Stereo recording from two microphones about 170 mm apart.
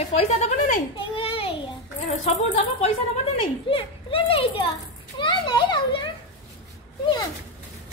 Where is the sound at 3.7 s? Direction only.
30° left (ahead or behind).